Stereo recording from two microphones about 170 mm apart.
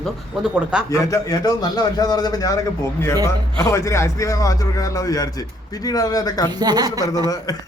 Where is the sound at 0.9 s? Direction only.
20° left (ahead or behind).